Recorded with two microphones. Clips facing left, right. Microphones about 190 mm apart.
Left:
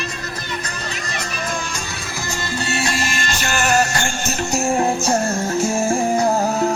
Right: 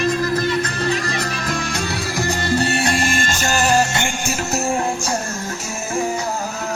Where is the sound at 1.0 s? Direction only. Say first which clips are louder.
Right 3 dB; 65° right (ahead or behind); by 4.7 s 5° right (ahead or behind).